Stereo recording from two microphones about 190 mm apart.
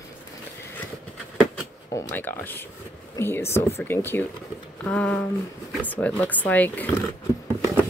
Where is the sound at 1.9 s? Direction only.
10° left (ahead or behind).